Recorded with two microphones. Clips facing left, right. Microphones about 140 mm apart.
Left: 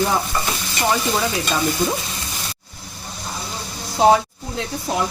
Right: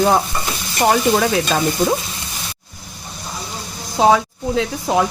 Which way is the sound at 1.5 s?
80° right.